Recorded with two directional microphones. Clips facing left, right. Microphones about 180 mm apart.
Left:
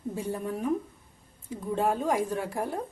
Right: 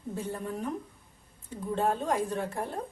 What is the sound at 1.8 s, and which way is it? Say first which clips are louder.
Speech: left 2 dB; 10° left (ahead or behind).